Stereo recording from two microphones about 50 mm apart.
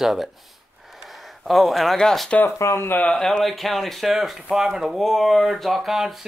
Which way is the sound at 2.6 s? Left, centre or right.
Left.